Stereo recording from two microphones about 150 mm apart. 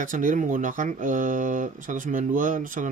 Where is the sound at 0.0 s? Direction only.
60° right (ahead or behind).